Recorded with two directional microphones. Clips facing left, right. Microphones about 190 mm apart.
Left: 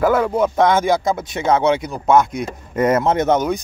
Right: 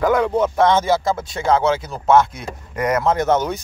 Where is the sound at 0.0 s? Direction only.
5° left (ahead or behind).